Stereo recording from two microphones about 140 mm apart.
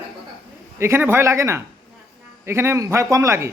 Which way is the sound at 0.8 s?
15° right (ahead or behind).